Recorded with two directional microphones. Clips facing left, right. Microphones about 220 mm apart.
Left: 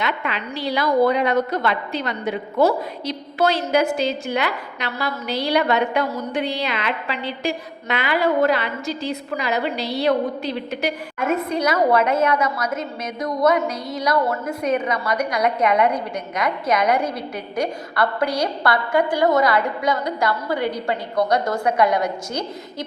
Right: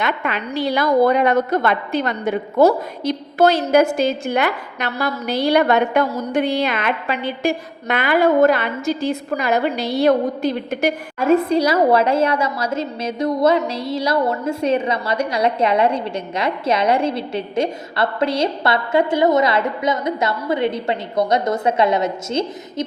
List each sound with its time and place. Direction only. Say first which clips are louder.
0.0 s a woman's voice: right 3 dB; 50° right (ahead or behind)
11.2 s a woman's voice: right 6 dB; 30° right (ahead or behind)